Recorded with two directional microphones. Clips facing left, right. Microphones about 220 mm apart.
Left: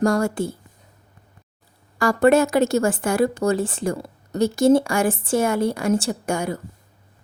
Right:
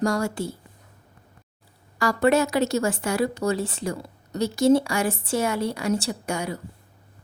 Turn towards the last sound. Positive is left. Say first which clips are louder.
# left 4 dB
turn(degrees=50)  # may be behind; listen again after turning